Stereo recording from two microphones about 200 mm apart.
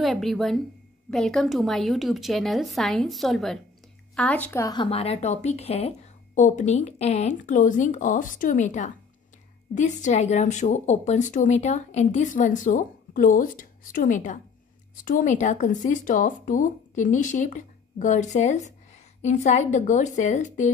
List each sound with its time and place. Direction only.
0.0 s a woman's voice: centre (ahead or behind); by 4.8 s 15° left (ahead or behind)
4.8 s a woman's voice: 30° left (ahead or behind)